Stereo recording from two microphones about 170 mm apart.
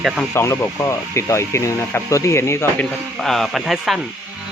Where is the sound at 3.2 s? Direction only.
Centre (ahead or behind).